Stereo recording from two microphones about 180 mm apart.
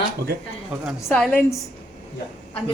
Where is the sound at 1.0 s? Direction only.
5° left (ahead or behind).